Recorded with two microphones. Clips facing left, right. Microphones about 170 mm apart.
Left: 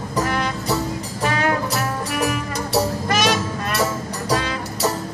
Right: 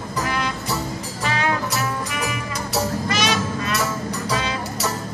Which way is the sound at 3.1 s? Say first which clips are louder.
Left 3 dB; 50° left (ahead or behind).